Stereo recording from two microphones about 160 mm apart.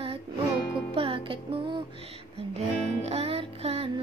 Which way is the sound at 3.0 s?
40° right (ahead or behind).